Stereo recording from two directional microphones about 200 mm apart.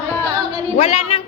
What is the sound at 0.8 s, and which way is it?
Speech, 35° left (ahead or behind).